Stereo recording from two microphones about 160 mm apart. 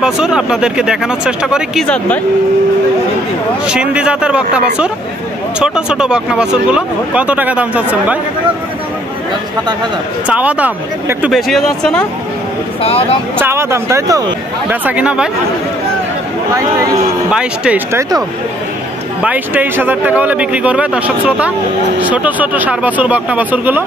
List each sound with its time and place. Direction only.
0.0 s speech: 5° right (ahead or behind)
3.6 s speech: 5° right (ahead or behind)
10.2 s speech: 10° right (ahead or behind)
12.8 s speech: 40° left (ahead or behind)
13.4 s speech: 15° right (ahead or behind)
17.3 s speech: 5° right (ahead or behind)
19.2 s speech: 10° right (ahead or behind)